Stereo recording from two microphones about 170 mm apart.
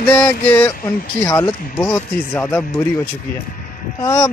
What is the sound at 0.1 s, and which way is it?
Speech, 10° left (ahead or behind).